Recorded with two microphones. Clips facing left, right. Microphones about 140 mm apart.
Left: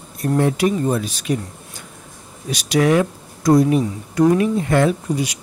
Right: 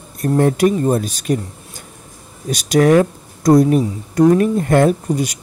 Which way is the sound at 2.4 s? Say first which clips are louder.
Right 4 dB; 45° right (ahead or behind).